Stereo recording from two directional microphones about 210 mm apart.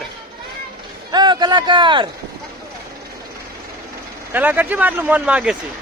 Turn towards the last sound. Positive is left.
turn(degrees=-5)  # may be behind; listen again after turning